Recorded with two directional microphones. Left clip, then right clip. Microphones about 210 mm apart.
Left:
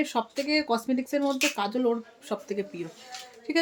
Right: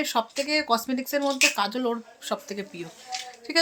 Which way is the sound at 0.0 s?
5° left (ahead or behind).